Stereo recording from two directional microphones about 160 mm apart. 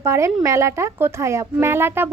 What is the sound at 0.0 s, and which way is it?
A woman's voice, 15° right (ahead or behind).